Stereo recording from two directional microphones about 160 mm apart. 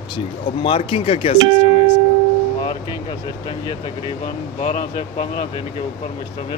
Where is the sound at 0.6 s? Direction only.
35° left (ahead or behind).